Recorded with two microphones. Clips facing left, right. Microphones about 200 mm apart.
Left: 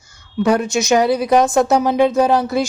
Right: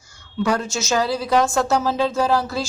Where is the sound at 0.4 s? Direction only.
20° left (ahead or behind).